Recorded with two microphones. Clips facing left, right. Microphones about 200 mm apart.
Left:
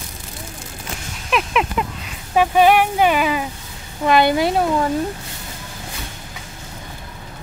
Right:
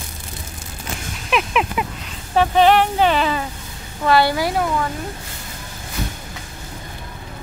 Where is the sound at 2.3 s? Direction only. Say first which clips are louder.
Even; 10° left (ahead or behind).